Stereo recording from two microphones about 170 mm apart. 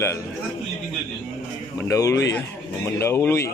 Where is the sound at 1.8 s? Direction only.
20° left (ahead or behind).